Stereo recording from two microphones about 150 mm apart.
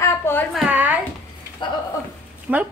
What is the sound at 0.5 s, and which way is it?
Speech, 10° right (ahead or behind).